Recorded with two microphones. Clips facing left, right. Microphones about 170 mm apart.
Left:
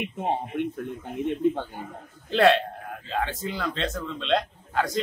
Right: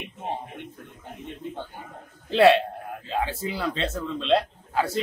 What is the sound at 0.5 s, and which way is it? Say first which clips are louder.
Speech: left 12 dB; 60° left (ahead or behind).